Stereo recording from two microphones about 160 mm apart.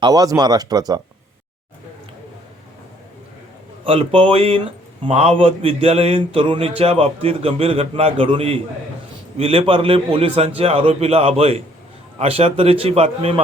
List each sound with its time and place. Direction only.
0.0 s speech: 25° right (ahead or behind)
3.8 s speech: 35° right (ahead or behind)